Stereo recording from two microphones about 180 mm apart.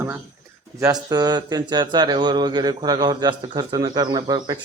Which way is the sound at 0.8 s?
20° right (ahead or behind).